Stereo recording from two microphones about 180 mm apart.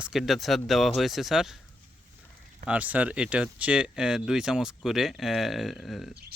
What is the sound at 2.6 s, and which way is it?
Speech, 10° right (ahead or behind).